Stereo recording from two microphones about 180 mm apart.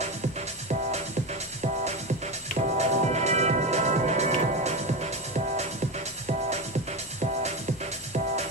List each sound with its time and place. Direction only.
2.6 s music: 40° right (ahead or behind)